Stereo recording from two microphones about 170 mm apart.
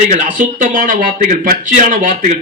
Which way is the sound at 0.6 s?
50° right (ahead or behind).